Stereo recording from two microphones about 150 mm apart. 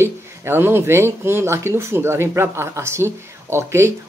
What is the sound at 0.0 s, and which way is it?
A woman's voice, 15° right (ahead or behind).